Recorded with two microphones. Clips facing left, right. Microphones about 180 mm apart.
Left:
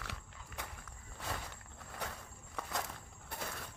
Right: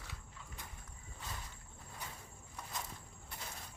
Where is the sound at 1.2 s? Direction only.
75° left (ahead or behind).